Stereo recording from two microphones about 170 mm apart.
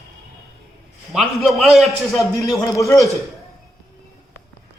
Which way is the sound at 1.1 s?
Centre (ahead or behind).